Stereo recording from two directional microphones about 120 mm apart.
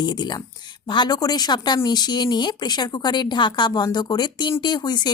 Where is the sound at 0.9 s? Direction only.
35° left (ahead or behind).